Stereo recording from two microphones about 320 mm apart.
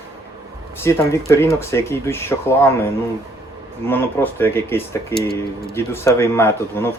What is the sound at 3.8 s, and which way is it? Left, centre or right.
Speech, centre.